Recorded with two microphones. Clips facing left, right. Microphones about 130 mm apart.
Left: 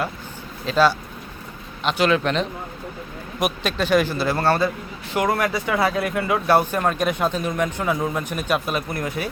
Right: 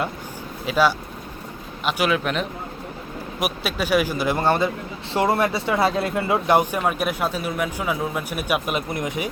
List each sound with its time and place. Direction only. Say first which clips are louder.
0.6 s a man's voice: left 1 dB; 15° right (ahead or behind)